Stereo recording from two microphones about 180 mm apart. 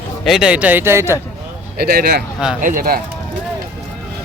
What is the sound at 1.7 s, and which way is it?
Speech, 60° right (ahead or behind).